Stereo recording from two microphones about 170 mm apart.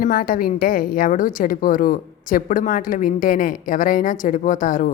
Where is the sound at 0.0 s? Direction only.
55° left (ahead or behind).